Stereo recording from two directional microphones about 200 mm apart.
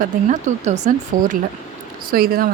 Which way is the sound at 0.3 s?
35° right (ahead or behind).